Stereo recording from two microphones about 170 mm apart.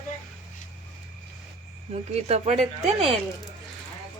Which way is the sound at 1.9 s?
40° right (ahead or behind).